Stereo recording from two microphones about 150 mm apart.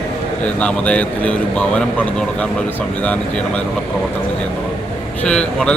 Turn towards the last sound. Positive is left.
turn(degrees=5)  # may be behind; listen again after turning